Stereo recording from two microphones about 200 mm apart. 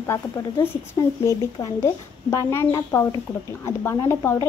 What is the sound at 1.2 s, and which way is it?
Speech, 15° left (ahead or behind).